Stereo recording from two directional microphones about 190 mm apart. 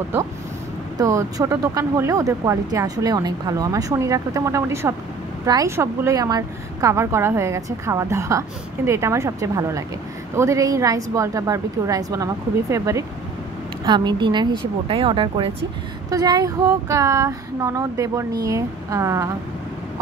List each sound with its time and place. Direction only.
0.9 s a woman's voice: 15° right (ahead or behind)